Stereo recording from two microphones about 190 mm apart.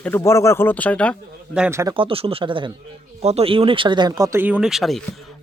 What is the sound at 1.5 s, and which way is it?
Speech, 10° right (ahead or behind).